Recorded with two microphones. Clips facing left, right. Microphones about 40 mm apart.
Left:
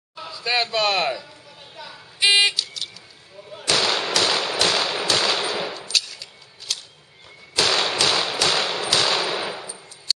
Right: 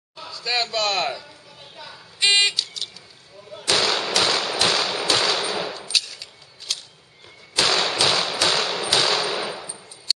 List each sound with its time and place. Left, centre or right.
0.1 s speech: centre
1.8 s a sound: centre
3.6 s firecracker: centre
4.6 s tap: centre
5.0 s machine gun: centre
5.9 s a sound: centre
6.7 s whip: centre
7.5 s a sound: centre
8.0 s tap: centre
8.5 s machine gun: centre